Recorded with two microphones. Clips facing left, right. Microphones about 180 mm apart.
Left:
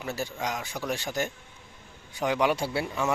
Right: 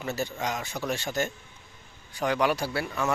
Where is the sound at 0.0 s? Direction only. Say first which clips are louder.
Right 1 dB; 10° left (ahead or behind).